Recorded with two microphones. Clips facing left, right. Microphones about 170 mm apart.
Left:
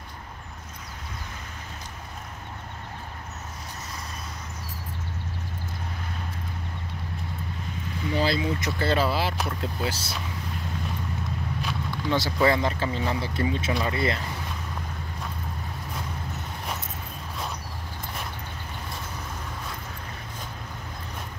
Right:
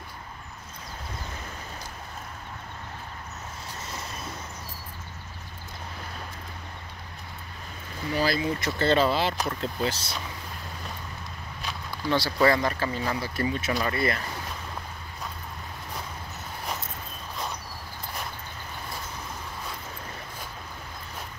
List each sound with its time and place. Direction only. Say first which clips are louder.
8.1 s speech: left 1 dB; 25° left (ahead or behind); by 10.1 s 5° left (ahead or behind)
12.1 s speech: even; 15° left (ahead or behind)